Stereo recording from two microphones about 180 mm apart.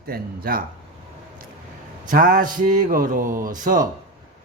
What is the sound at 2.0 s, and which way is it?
Speech, 50° right (ahead or behind).